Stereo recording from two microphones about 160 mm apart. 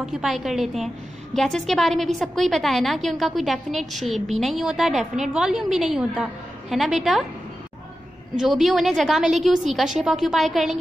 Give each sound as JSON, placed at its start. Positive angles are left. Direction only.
{"t": 0.0, "sound": "a woman's voice", "side_deg": 0}
{"t": 8.4, "sound": "a woman's voice", "side_deg": 0}